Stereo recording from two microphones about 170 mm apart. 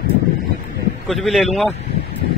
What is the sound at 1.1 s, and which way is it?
Speech, centre (ahead or behind).